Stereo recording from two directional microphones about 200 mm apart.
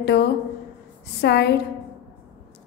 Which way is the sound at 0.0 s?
55° left (ahead or behind).